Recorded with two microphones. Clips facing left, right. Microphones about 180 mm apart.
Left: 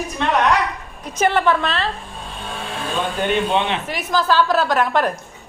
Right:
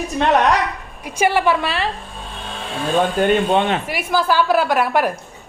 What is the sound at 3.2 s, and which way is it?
Speech, 50° right (ahead or behind).